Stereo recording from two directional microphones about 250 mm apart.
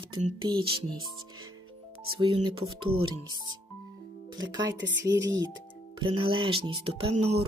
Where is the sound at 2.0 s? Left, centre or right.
Centre.